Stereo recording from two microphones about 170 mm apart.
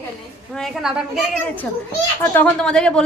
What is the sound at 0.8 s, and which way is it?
Speech, centre (ahead or behind).